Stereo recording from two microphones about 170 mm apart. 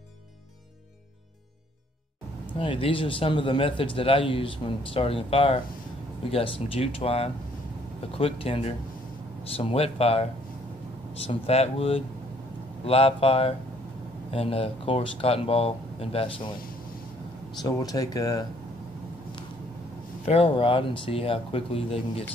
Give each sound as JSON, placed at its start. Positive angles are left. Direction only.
{"t": 2.6, "sound": "a man's voice", "side_deg": 30}
{"t": 11.2, "sound": "a man's voice", "side_deg": 35}
{"t": 17.6, "sound": "speech", "side_deg": 20}
{"t": 20.2, "sound": "a man's voice", "side_deg": 35}